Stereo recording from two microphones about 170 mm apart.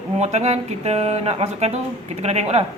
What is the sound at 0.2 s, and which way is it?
A man's voice, 40° right (ahead or behind).